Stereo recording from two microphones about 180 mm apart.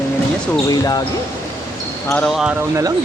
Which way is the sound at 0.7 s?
25° left (ahead or behind).